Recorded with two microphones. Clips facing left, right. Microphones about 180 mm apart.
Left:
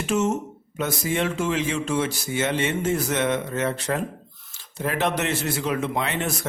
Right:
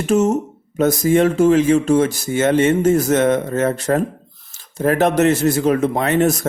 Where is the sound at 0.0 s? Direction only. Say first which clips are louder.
Right 7 dB; 40° right (ahead or behind).